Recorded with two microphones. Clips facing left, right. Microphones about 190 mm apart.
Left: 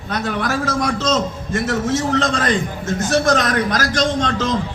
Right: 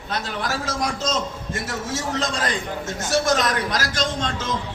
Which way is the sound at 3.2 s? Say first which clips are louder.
Left 4 dB; 60° left (ahead or behind).